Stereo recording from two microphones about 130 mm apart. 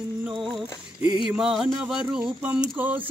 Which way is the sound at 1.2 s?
5° right (ahead or behind).